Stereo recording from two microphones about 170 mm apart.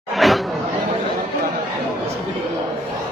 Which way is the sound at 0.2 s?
Centre (ahead or behind).